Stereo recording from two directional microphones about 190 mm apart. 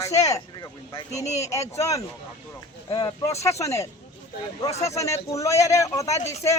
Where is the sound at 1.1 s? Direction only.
35° left (ahead or behind).